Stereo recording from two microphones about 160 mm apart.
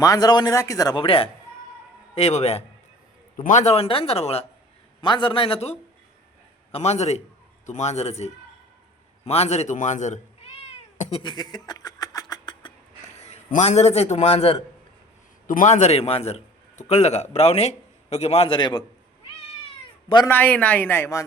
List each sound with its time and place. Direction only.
0.0 s a man's voice: 25° left (ahead or behind); by 2.6 s 40° left (ahead or behind)
3.3 s a man's voice: 50° left (ahead or behind)
11.2 s a sound: 25° left (ahead or behind)
13.1 s a man's voice: 45° left (ahead or behind)
15.4 s a man's voice: 55° left (ahead or behind); by 18.9 s 25° left (ahead or behind)
20.2 s speech: 10° left (ahead or behind)